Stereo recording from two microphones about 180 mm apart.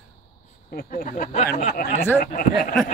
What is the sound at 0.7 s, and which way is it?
Speech, 50° left (ahead or behind).